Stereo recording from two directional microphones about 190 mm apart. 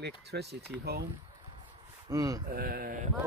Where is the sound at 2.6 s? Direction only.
50° right (ahead or behind).